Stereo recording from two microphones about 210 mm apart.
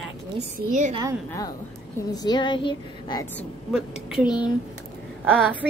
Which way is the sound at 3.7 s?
5° right (ahead or behind).